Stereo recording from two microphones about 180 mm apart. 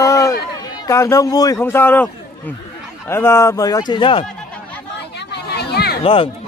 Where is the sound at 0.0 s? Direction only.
15° left (ahead or behind).